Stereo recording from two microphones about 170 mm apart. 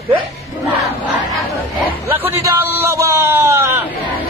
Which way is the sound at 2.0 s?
15° right (ahead or behind).